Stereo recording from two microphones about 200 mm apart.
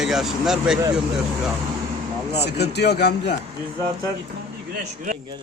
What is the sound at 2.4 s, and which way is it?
Speech, 55° left (ahead or behind).